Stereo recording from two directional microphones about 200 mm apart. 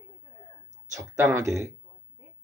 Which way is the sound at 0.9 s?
15° right (ahead or behind).